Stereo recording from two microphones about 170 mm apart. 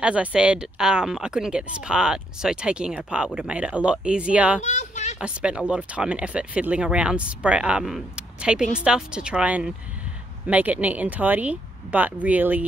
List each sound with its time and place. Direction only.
0.0 s speech: 5° right (ahead or behind)
4.6 s a sound: 45° left (ahead or behind)
5.2 s speech: 5° right (ahead or behind)